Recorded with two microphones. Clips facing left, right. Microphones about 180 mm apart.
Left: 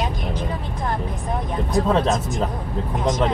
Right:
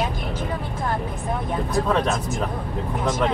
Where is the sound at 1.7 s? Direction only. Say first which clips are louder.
Left 3 dB; 25° left (ahead or behind).